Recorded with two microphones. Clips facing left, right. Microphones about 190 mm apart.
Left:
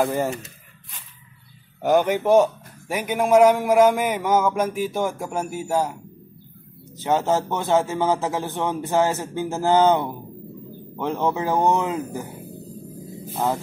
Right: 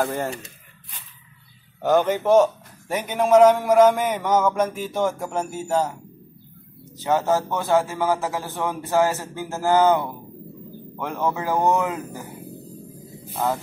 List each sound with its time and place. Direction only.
0.0 s speech: 5° left (ahead or behind)
1.8 s speech: 10° left (ahead or behind)
7.0 s a man's voice: 20° left (ahead or behind)
13.3 s speech: 15° left (ahead or behind)